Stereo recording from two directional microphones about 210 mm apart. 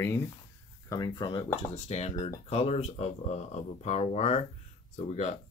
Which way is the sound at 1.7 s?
30° left (ahead or behind).